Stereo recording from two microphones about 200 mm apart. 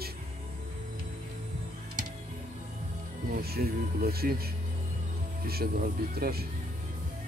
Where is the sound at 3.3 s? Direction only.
50° right (ahead or behind).